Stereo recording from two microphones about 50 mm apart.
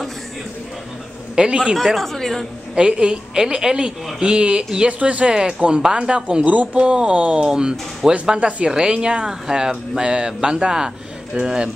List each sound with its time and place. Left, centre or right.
1.3 s a man's voice: centre
1.8 s speech: centre
2.7 s speech: centre
6.4 s speech: right